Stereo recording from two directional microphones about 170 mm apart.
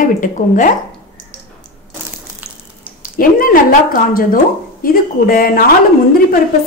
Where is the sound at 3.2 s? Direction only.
60° left (ahead or behind).